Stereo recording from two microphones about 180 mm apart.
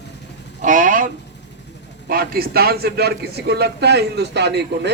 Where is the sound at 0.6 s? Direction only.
45° right (ahead or behind).